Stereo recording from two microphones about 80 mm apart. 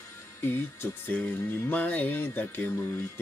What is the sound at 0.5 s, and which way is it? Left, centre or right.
Speech, left.